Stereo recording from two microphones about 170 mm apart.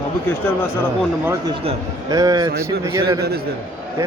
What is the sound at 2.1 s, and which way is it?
Speech, 20° right (ahead or behind).